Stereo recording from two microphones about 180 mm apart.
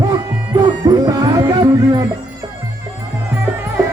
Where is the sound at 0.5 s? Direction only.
25° right (ahead or behind).